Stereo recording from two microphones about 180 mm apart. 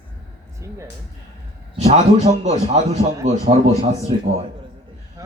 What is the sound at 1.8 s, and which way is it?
A man's voice, 40° right (ahead or behind).